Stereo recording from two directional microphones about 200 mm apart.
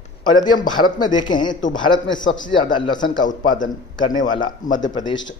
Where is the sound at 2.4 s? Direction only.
25° left (ahead or behind).